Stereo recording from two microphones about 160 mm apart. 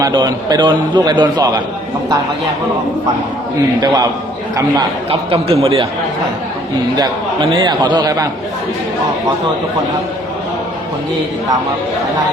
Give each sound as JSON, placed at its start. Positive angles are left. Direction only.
{"t": 0.0, "sound": "a man's voice", "side_deg": -25}
{"t": 3.8, "sound": "a man's voice", "side_deg": -25}
{"t": 5.3, "sound": "speech", "side_deg": -35}
{"t": 7.5, "sound": "a man's voice", "side_deg": -30}